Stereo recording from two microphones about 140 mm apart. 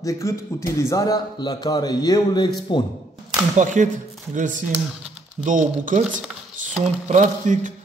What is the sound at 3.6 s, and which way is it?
A man's voice, 65° right (ahead or behind).